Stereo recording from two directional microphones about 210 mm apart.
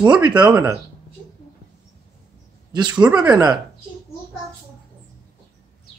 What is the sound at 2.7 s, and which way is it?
Speech, 20° right (ahead or behind).